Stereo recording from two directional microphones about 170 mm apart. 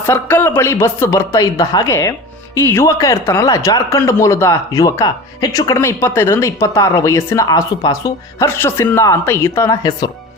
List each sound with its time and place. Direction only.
0.0 s speech: 15° left (ahead or behind)